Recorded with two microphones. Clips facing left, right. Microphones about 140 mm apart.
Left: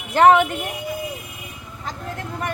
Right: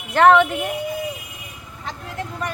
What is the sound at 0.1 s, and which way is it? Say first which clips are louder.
Speech: even; 5° left (ahead or behind).